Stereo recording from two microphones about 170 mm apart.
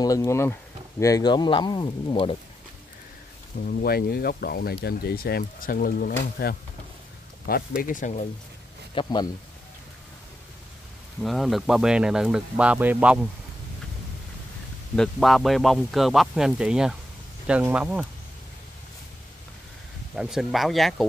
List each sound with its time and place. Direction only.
0.0 s speech: 20° left (ahead or behind)
3.6 s speech: 65° left (ahead or behind); by 8.3 s 45° left (ahead or behind)
8.9 s speech: 25° left (ahead or behind)
11.2 s speech: centre (ahead or behind)
15.0 s speech: centre (ahead or behind)
20.2 s speech: centre (ahead or behind)